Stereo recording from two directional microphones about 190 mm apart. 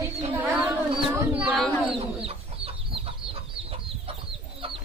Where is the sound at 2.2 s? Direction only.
30° right (ahead or behind).